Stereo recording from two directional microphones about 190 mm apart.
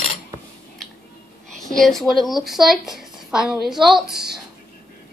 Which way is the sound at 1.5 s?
Centre (ahead or behind).